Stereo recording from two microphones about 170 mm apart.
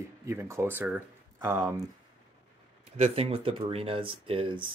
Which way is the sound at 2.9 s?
35° right (ahead or behind).